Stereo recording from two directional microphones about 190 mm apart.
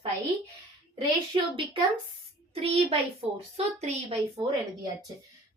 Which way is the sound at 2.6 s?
30° right (ahead or behind).